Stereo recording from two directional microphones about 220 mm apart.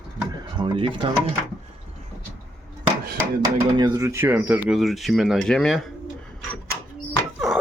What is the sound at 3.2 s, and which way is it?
Speech, 15° right (ahead or behind).